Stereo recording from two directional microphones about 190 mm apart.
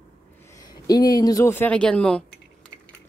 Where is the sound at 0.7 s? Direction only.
20° left (ahead or behind); by 2.2 s 5° left (ahead or behind).